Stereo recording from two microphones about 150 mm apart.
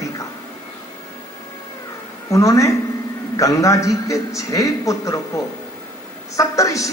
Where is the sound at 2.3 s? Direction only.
20° left (ahead or behind).